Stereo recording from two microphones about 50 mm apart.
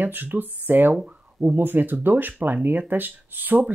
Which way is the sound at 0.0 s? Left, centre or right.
Right.